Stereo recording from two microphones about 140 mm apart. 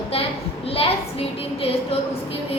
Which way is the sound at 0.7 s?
45° left (ahead or behind).